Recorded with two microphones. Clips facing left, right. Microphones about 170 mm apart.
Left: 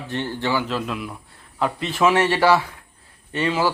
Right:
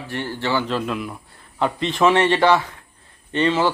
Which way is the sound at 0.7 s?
Centre (ahead or behind).